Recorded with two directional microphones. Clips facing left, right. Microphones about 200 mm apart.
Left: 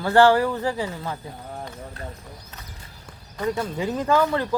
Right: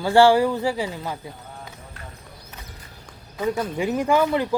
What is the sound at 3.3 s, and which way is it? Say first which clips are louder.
A man's voice: right 2 dB; 10° right (ahead or behind).